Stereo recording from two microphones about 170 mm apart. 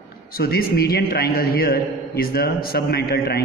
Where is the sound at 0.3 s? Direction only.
65° left (ahead or behind).